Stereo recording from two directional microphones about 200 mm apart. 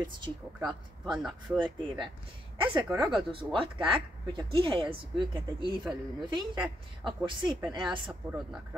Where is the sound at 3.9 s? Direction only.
25° right (ahead or behind).